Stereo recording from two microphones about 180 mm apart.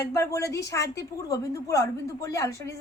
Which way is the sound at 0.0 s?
20° left (ahead or behind).